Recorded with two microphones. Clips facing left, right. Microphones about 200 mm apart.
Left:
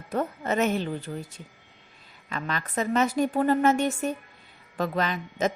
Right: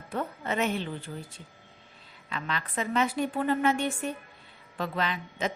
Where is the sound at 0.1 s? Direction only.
45° left (ahead or behind).